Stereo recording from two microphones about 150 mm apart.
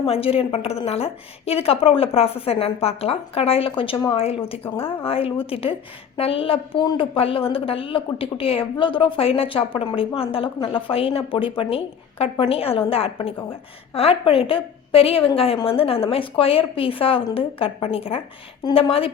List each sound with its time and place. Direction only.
0.0 s a woman's voice: 40° left (ahead or behind)